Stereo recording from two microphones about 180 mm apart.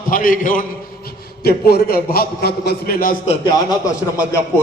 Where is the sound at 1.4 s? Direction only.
60° left (ahead or behind).